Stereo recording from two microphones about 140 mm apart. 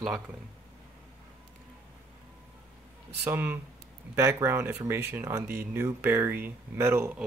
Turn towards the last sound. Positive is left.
turn(degrees=-20)  # may be behind; listen again after turning